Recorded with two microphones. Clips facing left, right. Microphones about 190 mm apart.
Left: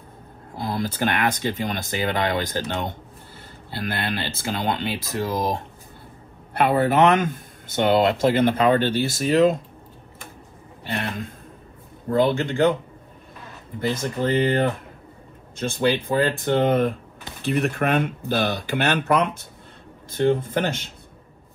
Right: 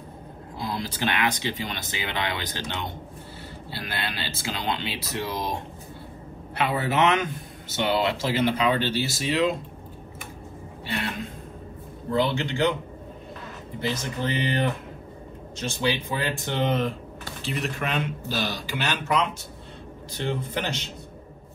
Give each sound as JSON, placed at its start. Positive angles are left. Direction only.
{"t": 0.6, "sound": "speech", "side_deg": 50}
{"t": 3.7, "sound": "speech", "side_deg": 50}
{"t": 6.5, "sound": "speech", "side_deg": 50}
{"t": 12.1, "sound": "speech", "side_deg": 50}
{"t": 13.7, "sound": "speech", "side_deg": 50}